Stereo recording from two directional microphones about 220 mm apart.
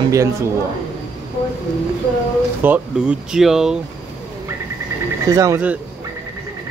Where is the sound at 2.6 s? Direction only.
5° right (ahead or behind).